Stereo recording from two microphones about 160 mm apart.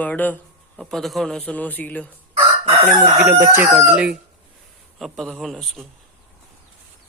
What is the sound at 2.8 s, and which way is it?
Crowing, 15° right (ahead or behind).